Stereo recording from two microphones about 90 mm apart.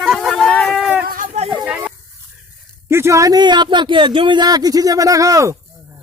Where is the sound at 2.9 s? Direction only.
30° right (ahead or behind).